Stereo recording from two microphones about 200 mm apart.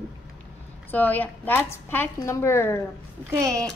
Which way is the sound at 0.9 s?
10° left (ahead or behind).